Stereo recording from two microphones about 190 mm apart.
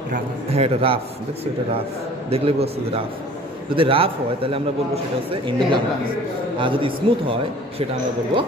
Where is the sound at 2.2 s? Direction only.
30° right (ahead or behind).